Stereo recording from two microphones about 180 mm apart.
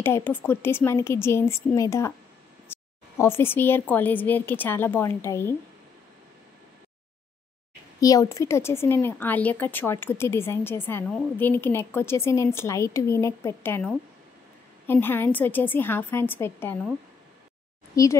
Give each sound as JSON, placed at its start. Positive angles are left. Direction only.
{"t": 0.0, "sound": "speech", "side_deg": 10}
{"t": 2.7, "sound": "a sound", "side_deg": 10}
{"t": 3.9, "sound": "speech", "side_deg": 10}
{"t": 8.0, "sound": "speech", "side_deg": 20}
{"t": 17.9, "sound": "speech", "side_deg": 20}